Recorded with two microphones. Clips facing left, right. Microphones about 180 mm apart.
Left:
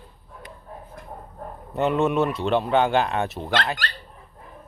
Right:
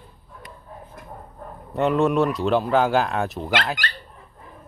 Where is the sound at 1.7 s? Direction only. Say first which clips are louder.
Right 2 dB; centre (ahead or behind).